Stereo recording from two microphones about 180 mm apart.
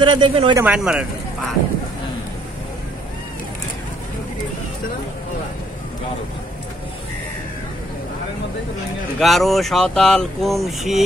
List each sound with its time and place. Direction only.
0.0 s speech: 25° right (ahead or behind)
0.7 s speech: 5° right (ahead or behind)
9.2 s speech: centre (ahead or behind)